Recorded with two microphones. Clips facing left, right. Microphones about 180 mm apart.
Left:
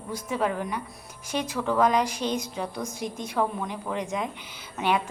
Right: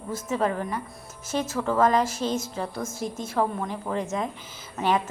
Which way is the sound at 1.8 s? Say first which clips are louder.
Right 1 dB; 15° left (ahead or behind).